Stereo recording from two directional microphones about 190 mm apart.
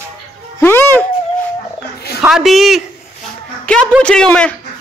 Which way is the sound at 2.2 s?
Centre (ahead or behind).